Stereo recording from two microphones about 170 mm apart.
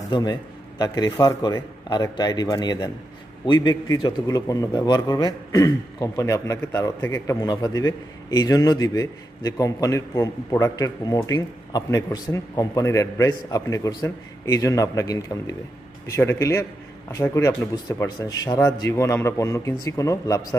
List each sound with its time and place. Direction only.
0.1 s a man's voice: 25° left (ahead or behind)